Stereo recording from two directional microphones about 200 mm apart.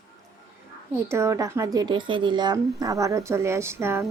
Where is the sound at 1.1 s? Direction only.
15° right (ahead or behind).